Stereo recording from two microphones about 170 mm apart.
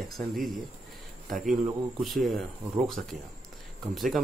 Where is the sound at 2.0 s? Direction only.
Centre (ahead or behind).